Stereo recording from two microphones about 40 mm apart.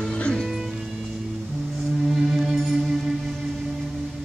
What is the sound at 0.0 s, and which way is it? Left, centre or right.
Music, left.